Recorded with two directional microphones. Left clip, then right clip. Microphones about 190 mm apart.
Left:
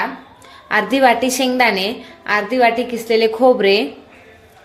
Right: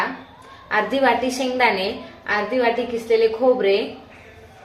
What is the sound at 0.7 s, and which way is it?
A woman's voice, 55° left (ahead or behind).